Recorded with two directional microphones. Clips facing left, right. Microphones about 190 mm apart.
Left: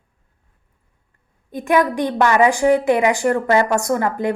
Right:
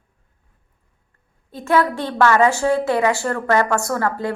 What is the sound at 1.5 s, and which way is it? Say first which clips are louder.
A woman's voice: left 1 dB; 15° left (ahead or behind).